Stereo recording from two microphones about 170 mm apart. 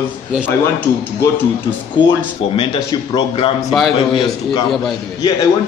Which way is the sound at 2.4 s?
35° left (ahead or behind).